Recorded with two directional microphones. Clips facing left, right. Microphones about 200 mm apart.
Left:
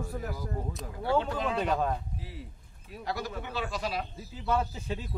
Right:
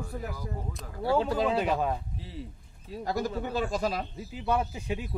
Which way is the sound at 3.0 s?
45° right (ahead or behind).